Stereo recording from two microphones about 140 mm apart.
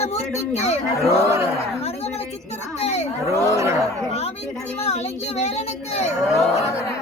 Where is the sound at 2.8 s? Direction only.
50° left (ahead or behind).